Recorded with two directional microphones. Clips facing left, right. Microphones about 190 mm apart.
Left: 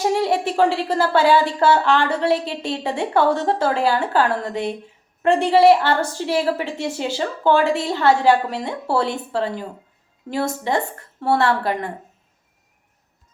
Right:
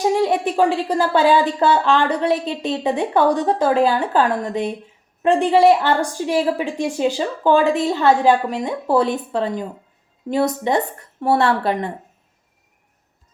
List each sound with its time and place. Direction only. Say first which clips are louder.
0.0 s a woman's voice: right 2 dB; 15° right (ahead or behind)